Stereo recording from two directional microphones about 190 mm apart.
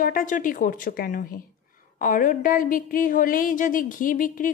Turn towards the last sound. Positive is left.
turn(degrees=45)  # may be behind; listen again after turning